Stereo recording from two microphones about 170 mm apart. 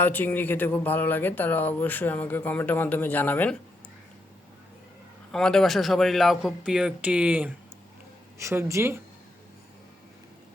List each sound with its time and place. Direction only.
0.0 s speech: 10° left (ahead or behind)
5.3 s speech: 5° left (ahead or behind); by 9.0 s 15° right (ahead or behind)